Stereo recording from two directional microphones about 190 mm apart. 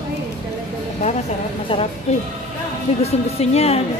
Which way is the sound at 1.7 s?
30° left (ahead or behind).